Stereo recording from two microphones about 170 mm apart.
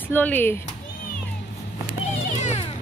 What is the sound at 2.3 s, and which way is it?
Children playing, 40° left (ahead or behind).